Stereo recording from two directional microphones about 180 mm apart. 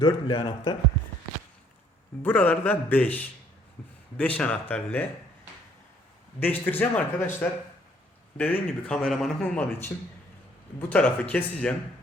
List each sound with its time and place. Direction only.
0.0 s a man's voice: 25° left (ahead or behind)
2.2 s speech: 10° left (ahead or behind)
6.4 s speech: 10° left (ahead or behind)
8.4 s speech: 10° left (ahead or behind)